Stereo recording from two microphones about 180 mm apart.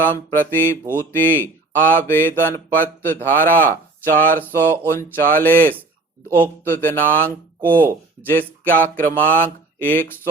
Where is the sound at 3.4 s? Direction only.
50° right (ahead or behind).